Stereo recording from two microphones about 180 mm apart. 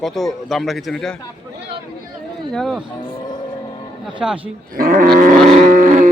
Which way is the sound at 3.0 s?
30° left (ahead or behind).